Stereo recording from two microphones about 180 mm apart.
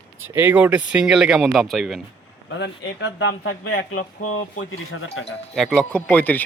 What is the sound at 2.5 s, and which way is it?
Speech, 85° left.